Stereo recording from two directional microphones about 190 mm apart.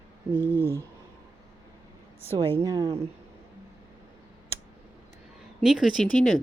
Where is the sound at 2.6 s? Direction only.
15° right (ahead or behind).